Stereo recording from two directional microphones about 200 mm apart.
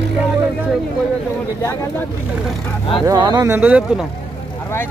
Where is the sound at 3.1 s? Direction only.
20° right (ahead or behind).